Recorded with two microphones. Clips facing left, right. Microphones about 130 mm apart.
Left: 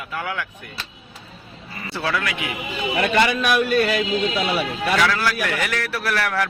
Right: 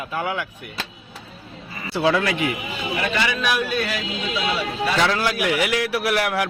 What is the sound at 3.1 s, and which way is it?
Speech, 50° left (ahead or behind).